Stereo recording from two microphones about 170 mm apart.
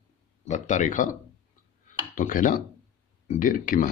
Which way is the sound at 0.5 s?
45° left (ahead or behind).